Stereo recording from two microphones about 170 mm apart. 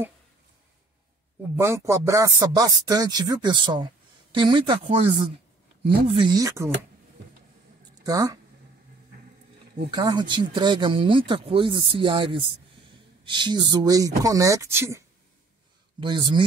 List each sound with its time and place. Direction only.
1.6 s speech: 15° right (ahead or behind)
7.9 s speech: 20° right (ahead or behind)
9.8 s speech: 25° right (ahead or behind)
16.0 s speech: 30° right (ahead or behind)